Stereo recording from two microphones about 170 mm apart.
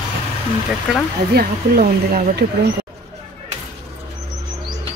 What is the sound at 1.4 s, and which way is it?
Speech, 65° right (ahead or behind).